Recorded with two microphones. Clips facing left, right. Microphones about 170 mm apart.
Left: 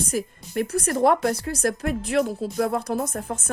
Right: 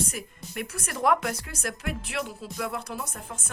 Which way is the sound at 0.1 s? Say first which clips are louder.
Left 10 dB; 35° left (ahead or behind).